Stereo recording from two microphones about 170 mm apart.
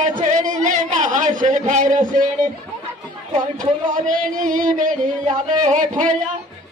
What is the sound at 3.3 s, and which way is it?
Speech, 50° right (ahead or behind).